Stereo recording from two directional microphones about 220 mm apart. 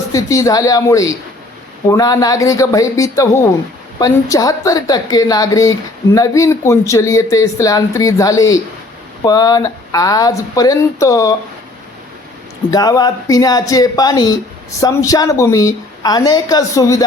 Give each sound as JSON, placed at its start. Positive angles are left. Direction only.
{"t": 0.1, "sound": "speech", "side_deg": 15}
{"t": 12.7, "sound": "speech", "side_deg": 15}